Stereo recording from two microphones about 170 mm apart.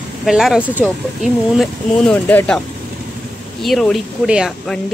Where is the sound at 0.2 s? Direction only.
Centre (ahead or behind).